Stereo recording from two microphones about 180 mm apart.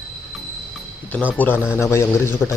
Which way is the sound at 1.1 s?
10° left (ahead or behind).